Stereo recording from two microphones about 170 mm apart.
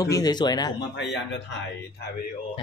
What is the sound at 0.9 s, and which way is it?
Speech, 90° left.